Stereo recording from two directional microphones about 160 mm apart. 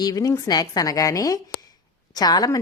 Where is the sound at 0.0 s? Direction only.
25° left (ahead or behind).